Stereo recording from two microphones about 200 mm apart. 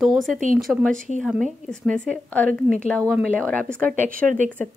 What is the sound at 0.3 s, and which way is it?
Speech, 40° right (ahead or behind).